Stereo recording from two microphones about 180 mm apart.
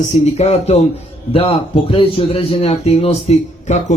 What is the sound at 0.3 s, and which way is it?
A man's voice, 35° left (ahead or behind).